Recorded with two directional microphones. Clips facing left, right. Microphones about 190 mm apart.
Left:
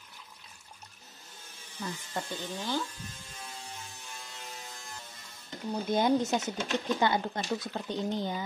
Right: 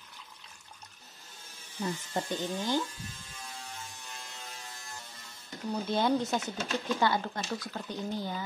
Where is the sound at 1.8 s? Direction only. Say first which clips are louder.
Right 4 dB; 20° right (ahead or behind).